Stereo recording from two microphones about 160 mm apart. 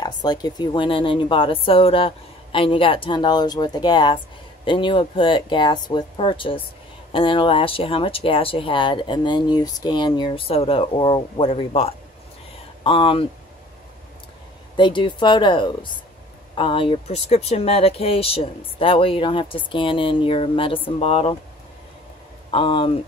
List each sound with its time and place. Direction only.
0.0 s speech: 25° left (ahead or behind)
14.8 s a woman's voice: 30° left (ahead or behind)
22.5 s speech: 35° left (ahead or behind)